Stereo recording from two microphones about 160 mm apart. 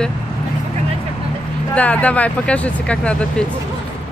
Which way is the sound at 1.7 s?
10° left (ahead or behind).